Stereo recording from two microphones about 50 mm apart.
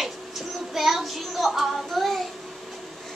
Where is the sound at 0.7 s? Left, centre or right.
Centre.